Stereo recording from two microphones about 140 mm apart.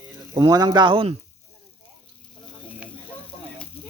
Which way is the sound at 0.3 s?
30° right (ahead or behind).